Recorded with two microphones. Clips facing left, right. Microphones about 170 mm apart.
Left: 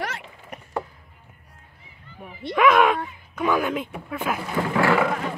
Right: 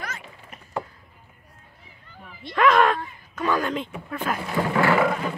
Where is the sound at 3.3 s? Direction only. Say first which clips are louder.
Left 2 dB; 10° left (ahead or behind).